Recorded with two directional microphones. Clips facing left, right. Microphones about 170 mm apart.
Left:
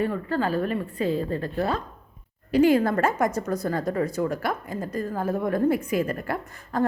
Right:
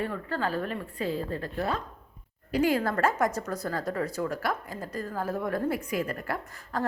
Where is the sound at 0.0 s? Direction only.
15° left (ahead or behind).